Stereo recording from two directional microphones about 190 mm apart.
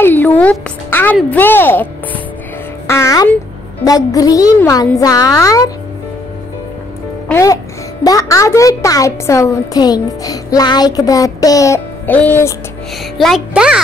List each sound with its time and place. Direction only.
0.0 s music: 10° left (ahead or behind)
1.3 s a child's voice: 10° left (ahead or behind)
2.9 s a child's voice: 15° left (ahead or behind)
7.2 s a child's voice: 15° left (ahead or behind)
13.2 s a child's voice: centre (ahead or behind)